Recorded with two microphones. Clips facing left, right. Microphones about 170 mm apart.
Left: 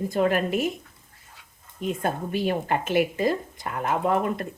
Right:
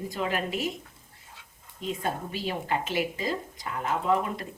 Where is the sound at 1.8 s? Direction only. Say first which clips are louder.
Left 4 dB; 55° left (ahead or behind).